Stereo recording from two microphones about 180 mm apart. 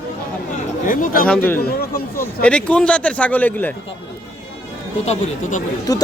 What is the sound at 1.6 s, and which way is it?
Speech, 55° left (ahead or behind).